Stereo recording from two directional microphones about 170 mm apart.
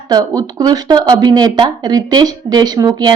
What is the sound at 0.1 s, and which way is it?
A woman's voice, 20° right (ahead or behind).